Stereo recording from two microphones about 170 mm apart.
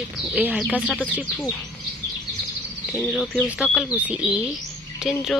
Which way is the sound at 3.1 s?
Centre (ahead or behind).